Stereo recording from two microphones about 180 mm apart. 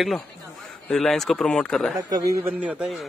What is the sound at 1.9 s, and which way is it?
Speech, 20° right (ahead or behind).